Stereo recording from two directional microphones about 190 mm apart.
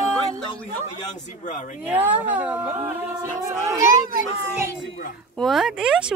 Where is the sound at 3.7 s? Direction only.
15° right (ahead or behind).